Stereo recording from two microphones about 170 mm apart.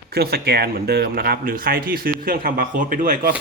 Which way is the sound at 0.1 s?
70° right (ahead or behind).